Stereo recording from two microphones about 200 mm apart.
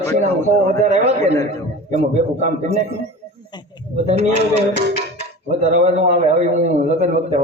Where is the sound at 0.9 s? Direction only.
30° right (ahead or behind).